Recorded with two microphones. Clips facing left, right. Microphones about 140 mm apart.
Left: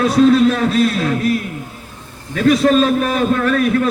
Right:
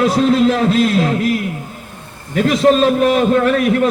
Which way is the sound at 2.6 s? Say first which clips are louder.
Right 2 dB; 25° right (ahead or behind).